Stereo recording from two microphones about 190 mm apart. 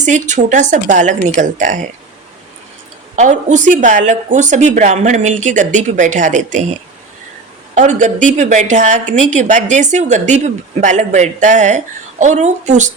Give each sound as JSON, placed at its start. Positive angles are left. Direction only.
{"t": 0.0, "sound": "a woman's voice", "side_deg": -40}
{"t": 3.2, "sound": "a woman's voice", "side_deg": -40}
{"t": 7.8, "sound": "a woman's voice", "side_deg": -40}